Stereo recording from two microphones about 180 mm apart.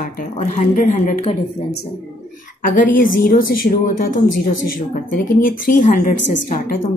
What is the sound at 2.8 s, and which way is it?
A woman's voice, 50° left (ahead or behind).